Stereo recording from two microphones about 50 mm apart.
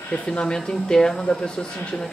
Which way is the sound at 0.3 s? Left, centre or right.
Centre.